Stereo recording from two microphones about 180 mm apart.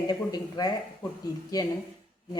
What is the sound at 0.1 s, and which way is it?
A woman's voice, 20° left (ahead or behind).